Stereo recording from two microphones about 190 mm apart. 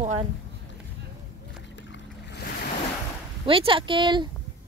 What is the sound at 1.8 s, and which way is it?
Boat, 70° left (ahead or behind).